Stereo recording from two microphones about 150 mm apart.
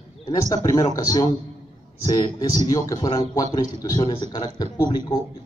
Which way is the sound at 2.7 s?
25° left (ahead or behind).